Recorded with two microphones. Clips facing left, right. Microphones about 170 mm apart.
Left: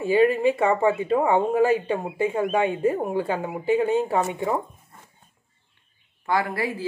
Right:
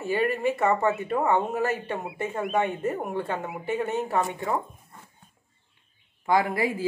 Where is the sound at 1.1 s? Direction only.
15° left (ahead or behind).